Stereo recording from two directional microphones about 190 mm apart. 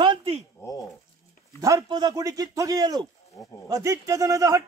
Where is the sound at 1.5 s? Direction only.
20° right (ahead or behind).